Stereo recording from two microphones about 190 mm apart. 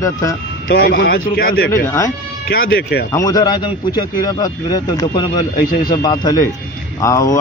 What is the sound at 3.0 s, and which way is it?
A man's voice, 20° left (ahead or behind).